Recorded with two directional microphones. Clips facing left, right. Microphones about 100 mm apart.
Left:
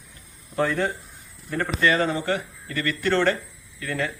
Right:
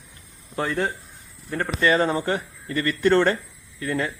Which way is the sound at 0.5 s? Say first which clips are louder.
Left 1 dB; 25° right (ahead or behind).